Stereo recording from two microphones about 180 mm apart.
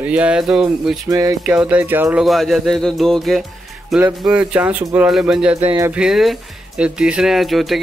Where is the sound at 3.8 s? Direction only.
5° right (ahead or behind).